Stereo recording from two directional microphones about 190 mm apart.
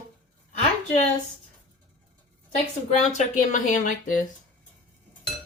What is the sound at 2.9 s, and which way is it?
Speech, 40° left (ahead or behind).